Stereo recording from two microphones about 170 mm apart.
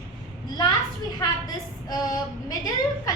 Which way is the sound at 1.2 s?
25° left (ahead or behind).